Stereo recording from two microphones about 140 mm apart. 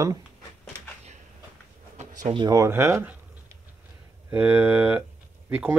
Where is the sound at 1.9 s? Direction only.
60° right (ahead or behind).